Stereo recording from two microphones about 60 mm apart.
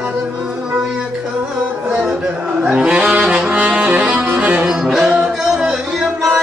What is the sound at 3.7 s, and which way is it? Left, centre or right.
Music, right.